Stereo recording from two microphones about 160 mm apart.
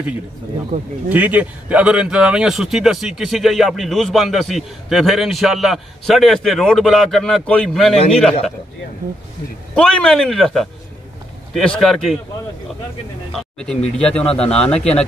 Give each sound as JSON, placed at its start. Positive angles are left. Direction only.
{"t": 0.7, "sound": "speech", "side_deg": -45}
{"t": 1.0, "sound": "speech", "side_deg": -10}
{"t": 9.8, "sound": "speech", "side_deg": 5}
{"t": 13.9, "sound": "speech", "side_deg": 5}